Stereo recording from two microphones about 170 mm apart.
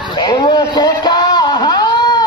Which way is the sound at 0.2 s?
25° left (ahead or behind).